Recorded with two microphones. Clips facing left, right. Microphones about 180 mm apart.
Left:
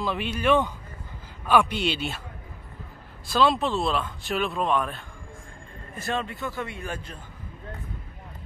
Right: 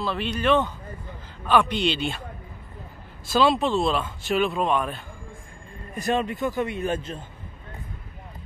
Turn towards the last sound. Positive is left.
turn(degrees=-25)  # may be behind; listen again after turning